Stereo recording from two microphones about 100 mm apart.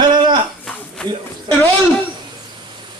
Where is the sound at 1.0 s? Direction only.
10° left (ahead or behind).